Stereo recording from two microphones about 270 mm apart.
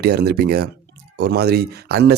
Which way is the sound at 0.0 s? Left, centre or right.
Right.